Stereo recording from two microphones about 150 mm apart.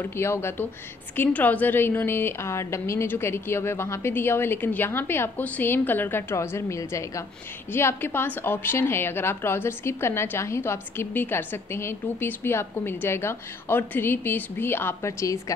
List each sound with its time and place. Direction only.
0.0 s a woman's voice: 15° left (ahead or behind)